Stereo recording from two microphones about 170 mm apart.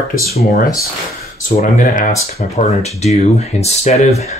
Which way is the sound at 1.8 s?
50° left (ahead or behind).